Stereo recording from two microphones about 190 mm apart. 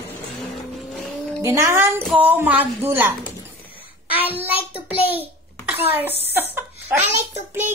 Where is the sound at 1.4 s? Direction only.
15° right (ahead or behind).